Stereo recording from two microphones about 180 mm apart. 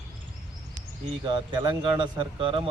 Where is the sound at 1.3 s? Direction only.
25° right (ahead or behind).